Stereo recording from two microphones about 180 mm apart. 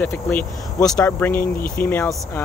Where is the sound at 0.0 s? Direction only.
10° left (ahead or behind).